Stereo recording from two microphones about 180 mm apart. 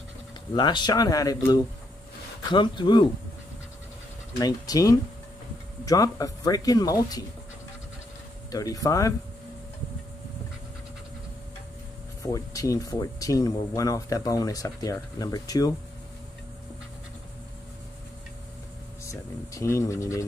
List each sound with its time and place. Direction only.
0.6 s speech: 25° left (ahead or behind)
4.4 s speech: 20° left (ahead or behind)
8.5 s speech: 20° left (ahead or behind)
12.2 s speech: 20° left (ahead or behind)
19.0 s speech: 15° left (ahead or behind)